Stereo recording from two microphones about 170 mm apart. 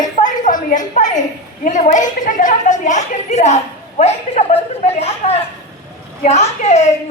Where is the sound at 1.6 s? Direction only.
45° left (ahead or behind).